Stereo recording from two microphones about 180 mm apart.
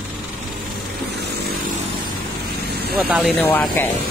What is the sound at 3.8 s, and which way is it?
Speech, 10° left (ahead or behind).